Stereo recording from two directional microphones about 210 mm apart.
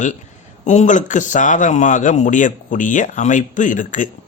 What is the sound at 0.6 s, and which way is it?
Speech, 35° left (ahead or behind).